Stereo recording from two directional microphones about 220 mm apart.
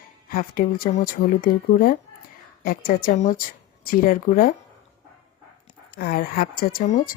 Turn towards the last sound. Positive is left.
turn(degrees=35)  # may be behind; listen again after turning